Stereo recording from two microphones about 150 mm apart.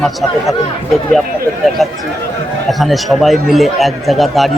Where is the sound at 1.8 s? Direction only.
Centre (ahead or behind).